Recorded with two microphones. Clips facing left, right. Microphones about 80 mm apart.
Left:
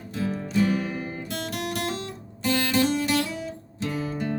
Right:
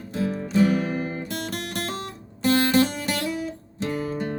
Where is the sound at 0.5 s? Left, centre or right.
Right.